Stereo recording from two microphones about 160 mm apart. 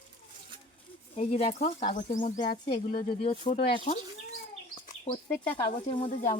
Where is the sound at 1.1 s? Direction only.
40° left (ahead or behind).